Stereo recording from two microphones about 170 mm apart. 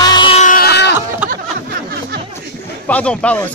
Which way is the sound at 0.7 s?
80° left.